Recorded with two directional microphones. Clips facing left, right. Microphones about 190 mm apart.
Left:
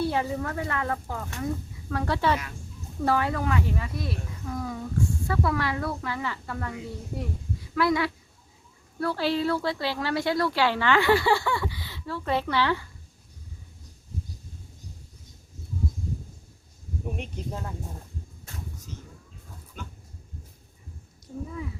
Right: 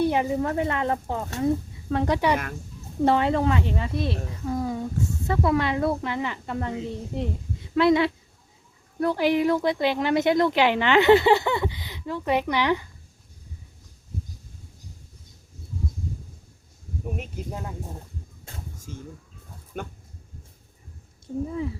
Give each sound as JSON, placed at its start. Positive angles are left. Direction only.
{"t": 0.0, "sound": "speech", "side_deg": -15}
{"t": 17.2, "sound": "speech", "side_deg": -5}
{"t": 18.9, "sound": "bird", "side_deg": -50}
{"t": 19.7, "sound": "dog", "side_deg": -55}